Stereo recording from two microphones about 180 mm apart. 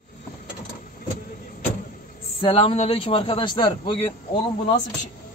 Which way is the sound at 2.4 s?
30° left (ahead or behind).